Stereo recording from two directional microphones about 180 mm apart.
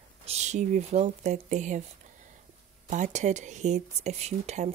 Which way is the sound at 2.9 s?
40° right (ahead or behind).